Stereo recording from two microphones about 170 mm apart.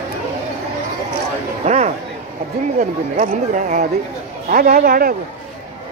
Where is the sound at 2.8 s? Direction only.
45° right (ahead or behind).